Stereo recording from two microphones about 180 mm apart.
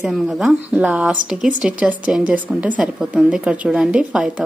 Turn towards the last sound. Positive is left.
turn(degrees=-5)  # may be behind; listen again after turning